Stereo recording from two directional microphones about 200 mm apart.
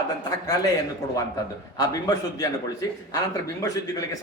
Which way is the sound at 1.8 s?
20° left (ahead or behind).